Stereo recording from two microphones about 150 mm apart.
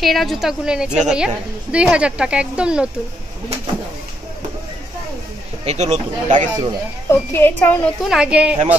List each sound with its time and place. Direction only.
0.0 s a woman's voice: centre (ahead or behind)
5.7 s speech: 50° right (ahead or behind)
7.1 s a woman's voice: 15° left (ahead or behind)
8.0 s a woman's voice: 5° right (ahead or behind)